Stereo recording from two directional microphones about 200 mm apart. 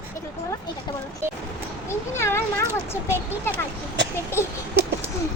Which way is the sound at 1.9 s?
15° left (ahead or behind).